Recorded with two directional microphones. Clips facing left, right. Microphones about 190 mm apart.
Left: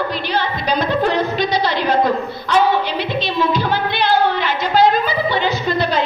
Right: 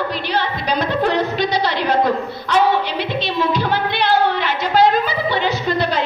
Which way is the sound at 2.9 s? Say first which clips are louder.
Left 1 dB; 65° right (ahead or behind).